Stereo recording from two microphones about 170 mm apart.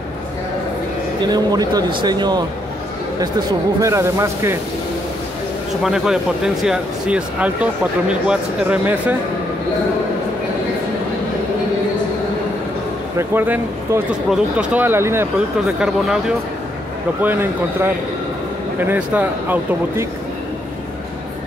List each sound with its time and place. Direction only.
1.2 s speech: 25° right (ahead or behind)
3.8 s speech: 20° right (ahead or behind)
5.9 s speech: 5° right (ahead or behind)
13.2 s speech: 10° right (ahead or behind)
15.3 s speech: 5° right (ahead or behind)